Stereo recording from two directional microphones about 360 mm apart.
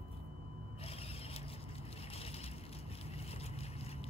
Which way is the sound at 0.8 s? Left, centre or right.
Centre.